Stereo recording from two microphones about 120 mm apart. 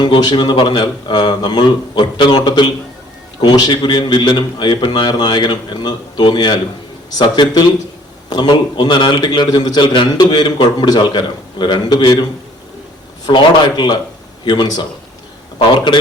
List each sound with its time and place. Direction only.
0.0 s a man's voice: 40° left (ahead or behind)
13.2 s a man's voice: 40° left (ahead or behind)